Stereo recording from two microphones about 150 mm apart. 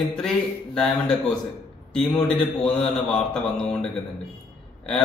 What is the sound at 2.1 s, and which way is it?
A man's voice, 5° left (ahead or behind).